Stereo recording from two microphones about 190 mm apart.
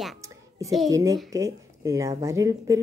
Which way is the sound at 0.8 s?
15° right (ahead or behind).